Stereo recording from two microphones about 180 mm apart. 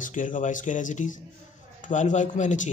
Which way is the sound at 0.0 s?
45° left (ahead or behind).